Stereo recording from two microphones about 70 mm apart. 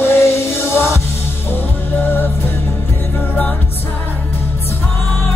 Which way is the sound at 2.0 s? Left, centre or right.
Left.